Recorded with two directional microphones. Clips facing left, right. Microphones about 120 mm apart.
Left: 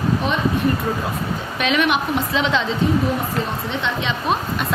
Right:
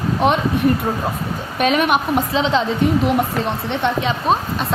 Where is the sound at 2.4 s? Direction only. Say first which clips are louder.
Right 2 dB; 35° right (ahead or behind).